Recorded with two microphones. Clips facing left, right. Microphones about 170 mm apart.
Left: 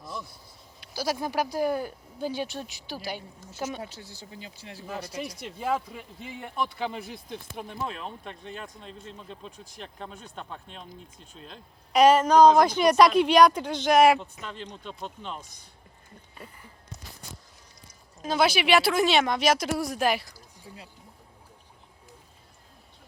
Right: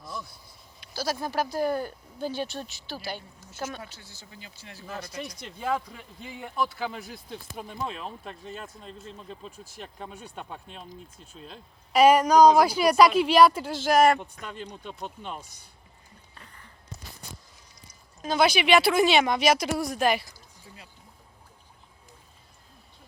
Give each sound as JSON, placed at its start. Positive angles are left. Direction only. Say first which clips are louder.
{"t": 0.0, "sound": "a sound", "louder": "even", "side_deg": 5}
{"t": 0.9, "sound": "speech", "louder": "left 1 dB", "side_deg": 15}
{"t": 3.8, "sound": "speech", "louder": "left 5 dB", "side_deg": 40}
{"t": 5.1, "sound": "speech", "louder": "left 2 dB", "side_deg": 10}
{"t": 16.3, "sound": "a sound", "louder": "left 6 dB", "side_deg": 10}
{"t": 18.2, "sound": "speech", "louder": "right 1 dB", "side_deg": 5}
{"t": 20.7, "sound": "speech", "louder": "left 4 dB", "side_deg": 20}